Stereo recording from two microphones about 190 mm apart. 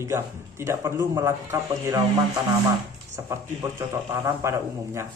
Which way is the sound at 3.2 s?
15° right (ahead or behind).